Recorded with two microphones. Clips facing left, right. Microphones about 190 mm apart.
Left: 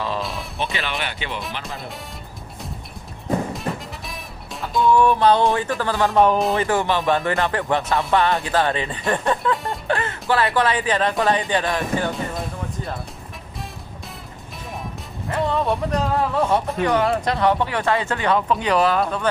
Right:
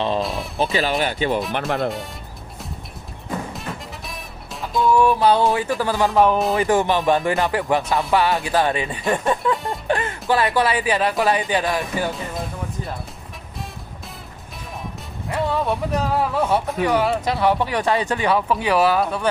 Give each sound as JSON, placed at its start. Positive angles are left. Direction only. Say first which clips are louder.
{"t": 0.2, "sound": "speech", "louder": "right 4 dB", "side_deg": 0}
{"t": 0.6, "sound": "speech", "louder": "right 7 dB", "side_deg": -35}
{"t": 1.5, "sound": "speech", "louder": "right 10 dB", "side_deg": -60}
{"t": 4.6, "sound": "speech", "louder": "even", "side_deg": -5}
{"t": 6.6, "sound": "speech", "louder": "right 2 dB", "side_deg": -15}
{"t": 9.8, "sound": "music", "louder": "right 1 dB", "side_deg": -15}
{"t": 10.3, "sound": "speech", "louder": "right 1 dB", "side_deg": -10}
{"t": 15.3, "sound": "speech", "louder": "left 1 dB", "side_deg": -5}